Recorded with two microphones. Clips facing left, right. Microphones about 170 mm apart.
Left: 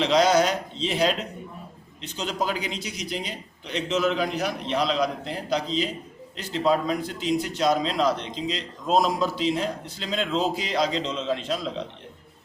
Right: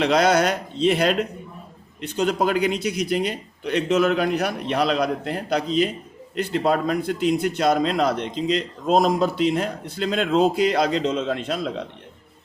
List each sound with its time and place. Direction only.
0.0 s a man's voice: 60° right (ahead or behind)